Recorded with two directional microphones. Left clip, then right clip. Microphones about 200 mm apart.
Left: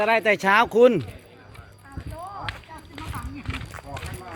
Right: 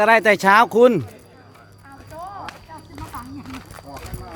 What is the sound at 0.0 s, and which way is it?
Speech, 25° right (ahead or behind).